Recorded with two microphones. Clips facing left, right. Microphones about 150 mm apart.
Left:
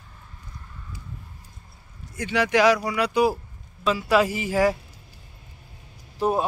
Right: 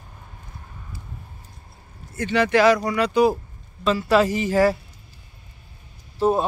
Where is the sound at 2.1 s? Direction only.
10° left (ahead or behind).